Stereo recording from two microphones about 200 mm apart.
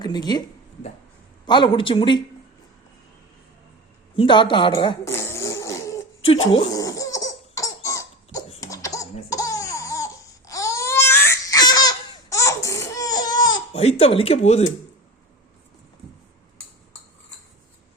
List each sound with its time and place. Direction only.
0.0 s speech: 20° left (ahead or behind)
1.5 s speech: 25° left (ahead or behind)
4.2 s speech: 25° left (ahead or behind)
5.0 s a sound: 15° left (ahead or behind)
6.7 s laughter: 20° left (ahead or behind)
9.3 s baby cry: 15° left (ahead or behind)
13.8 s speech: 30° left (ahead or behind)